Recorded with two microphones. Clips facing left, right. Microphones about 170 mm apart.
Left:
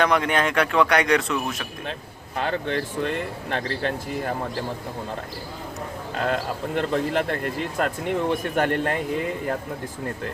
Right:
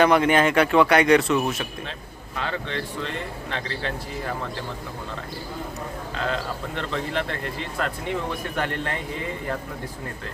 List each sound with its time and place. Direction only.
0.0 s speech: 5° right (ahead or behind)
2.3 s speech: 50° left (ahead or behind)
6.1 s speech: 50° left (ahead or behind)